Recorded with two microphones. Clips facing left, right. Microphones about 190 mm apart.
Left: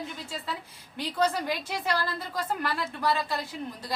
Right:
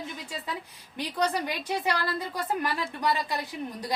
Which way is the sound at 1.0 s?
15° right (ahead or behind).